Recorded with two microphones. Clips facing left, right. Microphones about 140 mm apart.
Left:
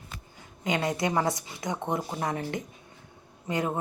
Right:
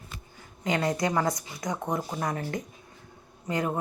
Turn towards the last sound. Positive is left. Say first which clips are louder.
# even
turn(degrees=25)  # may be behind; listen again after turning